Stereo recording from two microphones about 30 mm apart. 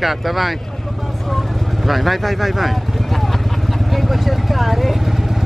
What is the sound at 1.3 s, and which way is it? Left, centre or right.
Vehicle, centre.